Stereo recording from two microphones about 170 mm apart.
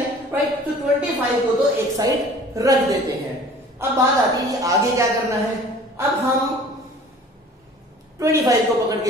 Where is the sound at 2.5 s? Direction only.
20° right (ahead or behind).